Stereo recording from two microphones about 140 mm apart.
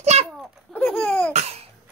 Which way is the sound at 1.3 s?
55° right (ahead or behind).